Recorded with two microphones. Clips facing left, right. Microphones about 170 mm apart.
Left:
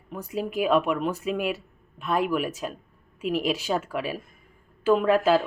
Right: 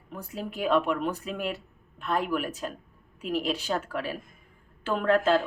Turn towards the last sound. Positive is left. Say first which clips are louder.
# left 3 dB
turn(degrees=10)  # may be behind; listen again after turning